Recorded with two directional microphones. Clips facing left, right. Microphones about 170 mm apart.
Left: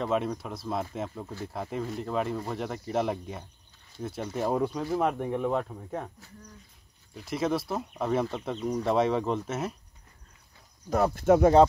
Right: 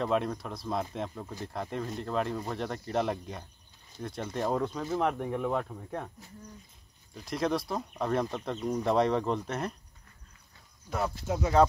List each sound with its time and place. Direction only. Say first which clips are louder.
0.0 s speech: left 1 dB; centre (ahead or behind)
7.2 s speech: left 1 dB; 5° left (ahead or behind)
10.9 s speech: left 7 dB; 45° left (ahead or behind)
11.2 s speech: left 12 dB; 65° left (ahead or behind)